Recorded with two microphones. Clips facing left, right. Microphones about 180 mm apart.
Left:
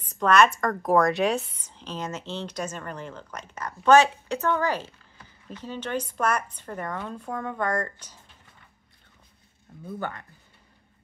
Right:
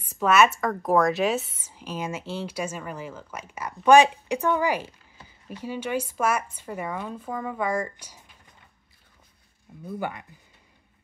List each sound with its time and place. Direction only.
0.1 s speech: 5° right (ahead or behind)
9.8 s speech: 10° right (ahead or behind)